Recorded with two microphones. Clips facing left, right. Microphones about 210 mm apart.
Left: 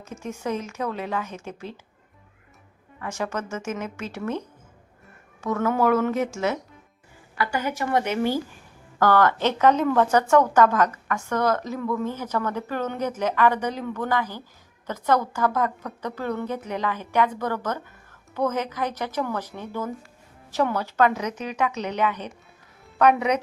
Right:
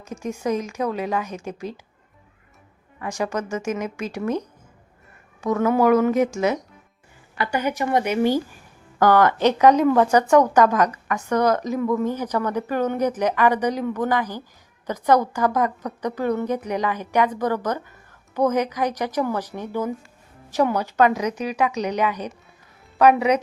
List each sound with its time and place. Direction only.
0.0 s a woman's voice: 15° right (ahead or behind)
3.0 s a woman's voice: 15° right (ahead or behind)
5.4 s a woman's voice: 15° right (ahead or behind)